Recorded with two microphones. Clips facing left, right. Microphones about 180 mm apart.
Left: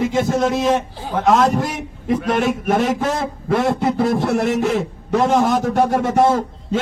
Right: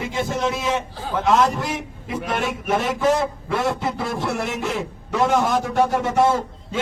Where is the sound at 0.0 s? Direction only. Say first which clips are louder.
Left 6 dB; 45° left (ahead or behind).